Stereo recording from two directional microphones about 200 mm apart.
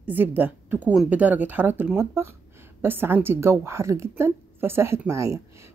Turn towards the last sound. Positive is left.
turn(degrees=-15)  # may be behind; listen again after turning